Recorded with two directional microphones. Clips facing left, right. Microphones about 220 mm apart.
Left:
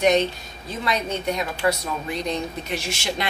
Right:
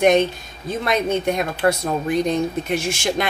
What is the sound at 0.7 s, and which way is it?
A woman's voice, 50° right (ahead or behind).